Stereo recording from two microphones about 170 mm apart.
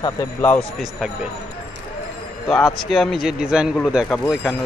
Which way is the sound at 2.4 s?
Centre (ahead or behind).